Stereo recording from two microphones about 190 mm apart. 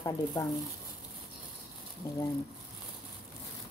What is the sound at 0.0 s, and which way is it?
Speech, 15° left (ahead or behind).